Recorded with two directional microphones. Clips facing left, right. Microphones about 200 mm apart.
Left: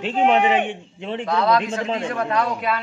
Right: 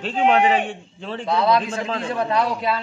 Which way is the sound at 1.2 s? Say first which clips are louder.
Right 1 dB; 25° right (ahead or behind).